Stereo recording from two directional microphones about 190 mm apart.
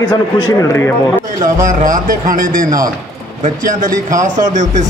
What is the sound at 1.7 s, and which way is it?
Speech, 45° right (ahead or behind).